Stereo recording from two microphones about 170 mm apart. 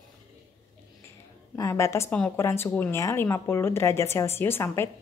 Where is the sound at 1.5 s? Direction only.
20° left (ahead or behind).